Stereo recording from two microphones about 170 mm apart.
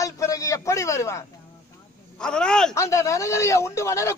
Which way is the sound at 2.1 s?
5° left (ahead or behind).